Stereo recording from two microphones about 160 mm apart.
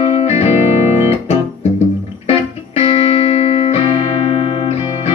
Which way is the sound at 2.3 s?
40° left (ahead or behind).